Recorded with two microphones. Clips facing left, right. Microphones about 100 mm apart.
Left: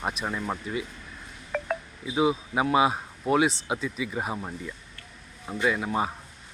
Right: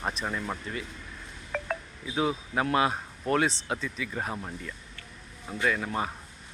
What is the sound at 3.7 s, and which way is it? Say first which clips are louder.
Speech: left 3 dB; 15° left (ahead or behind).